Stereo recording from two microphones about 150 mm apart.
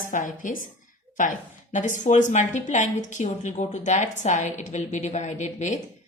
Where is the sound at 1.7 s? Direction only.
55° left (ahead or behind).